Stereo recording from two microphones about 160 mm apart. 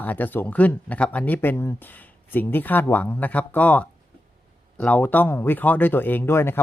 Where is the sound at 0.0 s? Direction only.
10° left (ahead or behind).